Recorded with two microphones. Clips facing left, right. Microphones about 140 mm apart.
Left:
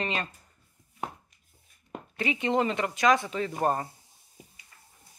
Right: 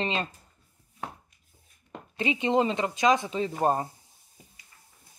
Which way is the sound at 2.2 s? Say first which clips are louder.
Right 2 dB; 20° right (ahead or behind).